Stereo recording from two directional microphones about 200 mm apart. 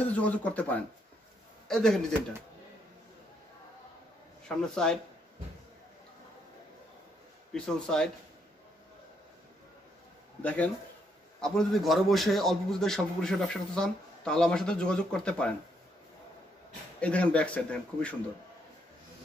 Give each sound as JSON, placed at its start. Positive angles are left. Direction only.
{"t": 0.0, "sound": "a man's voice", "side_deg": 5}
{"t": 4.5, "sound": "a man's voice", "side_deg": 5}
{"t": 7.5, "sound": "a man's voice", "side_deg": 5}
{"t": 10.4, "sound": "a man's voice", "side_deg": 5}
{"t": 17.0, "sound": "a man's voice", "side_deg": 5}